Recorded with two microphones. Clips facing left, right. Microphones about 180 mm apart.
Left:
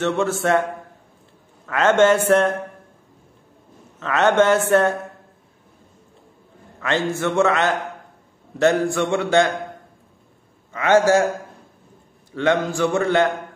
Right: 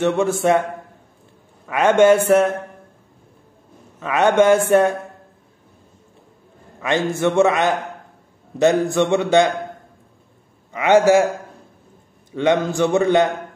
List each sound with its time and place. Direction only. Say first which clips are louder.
0.0 s speech: right 3 dB; 15° right (ahead or behind)
1.7 s speech: right 2 dB; 15° right (ahead or behind)
4.0 s speech: right 2 dB; 10° right (ahead or behind)
6.8 s a man's voice: right 3 dB; 15° right (ahead or behind)
10.7 s speech: right 2 dB; 15° right (ahead or behind)
12.3 s a man's voice: right 2 dB; 20° right (ahead or behind)